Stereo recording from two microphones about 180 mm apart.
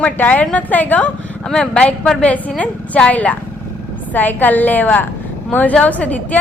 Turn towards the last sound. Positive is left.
turn(degrees=10)  # may be behind; listen again after turning